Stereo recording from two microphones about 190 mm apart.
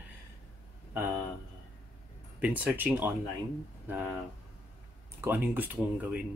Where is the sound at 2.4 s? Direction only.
10° right (ahead or behind).